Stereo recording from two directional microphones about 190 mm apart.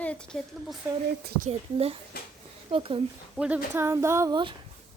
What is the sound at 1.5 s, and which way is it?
Speech, 30° right (ahead or behind).